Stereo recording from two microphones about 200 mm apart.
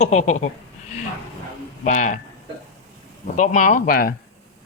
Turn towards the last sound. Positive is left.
turn(degrees=45)  # may be behind; listen again after turning